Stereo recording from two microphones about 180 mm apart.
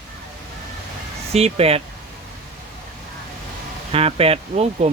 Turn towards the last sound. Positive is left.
turn(degrees=-35)  # may be behind; listen again after turning